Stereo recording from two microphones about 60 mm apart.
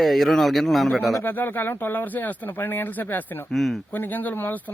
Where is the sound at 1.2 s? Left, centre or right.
Left.